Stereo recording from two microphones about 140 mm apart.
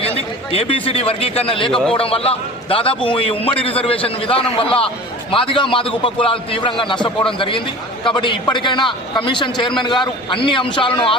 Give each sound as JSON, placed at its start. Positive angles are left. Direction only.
{"t": 0.0, "sound": "a man's voice", "side_deg": 45}